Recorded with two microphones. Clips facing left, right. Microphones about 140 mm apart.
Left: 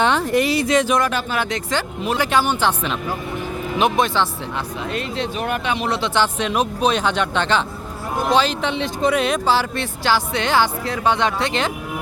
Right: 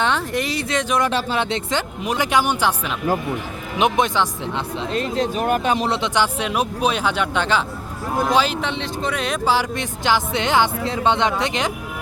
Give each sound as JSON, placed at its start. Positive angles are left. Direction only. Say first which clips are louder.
{"t": 0.0, "sound": "speech", "louder": "left 4 dB", "side_deg": 0}
{"t": 1.0, "sound": "speech", "louder": "right 1 dB", "side_deg": -25}
{"t": 4.9, "sound": "speech", "louder": "right 5 dB", "side_deg": -40}
{"t": 5.9, "sound": "speech", "louder": "even", "side_deg": -15}
{"t": 8.7, "sound": "speech", "louder": "left 5 dB", "side_deg": 10}
{"t": 9.5, "sound": "speech", "louder": "left 1 dB", "side_deg": -15}